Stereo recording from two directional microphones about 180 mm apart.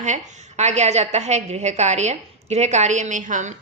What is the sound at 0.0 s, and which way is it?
A woman's voice, 40° right (ahead or behind).